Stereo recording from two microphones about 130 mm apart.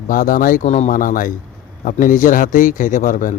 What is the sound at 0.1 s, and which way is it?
A man's voice, 90° left.